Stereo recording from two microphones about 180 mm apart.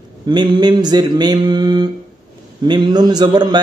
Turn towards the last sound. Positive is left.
turn(degrees=-25)  # may be behind; listen again after turning